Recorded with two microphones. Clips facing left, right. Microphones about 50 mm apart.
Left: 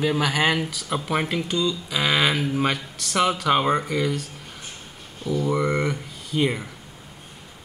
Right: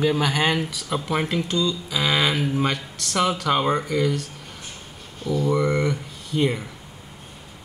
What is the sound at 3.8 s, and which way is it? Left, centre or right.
Speech, left.